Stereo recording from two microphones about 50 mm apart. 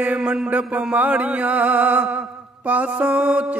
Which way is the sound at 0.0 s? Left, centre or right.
Right.